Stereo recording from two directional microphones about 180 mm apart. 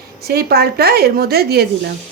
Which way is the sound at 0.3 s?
60° right (ahead or behind).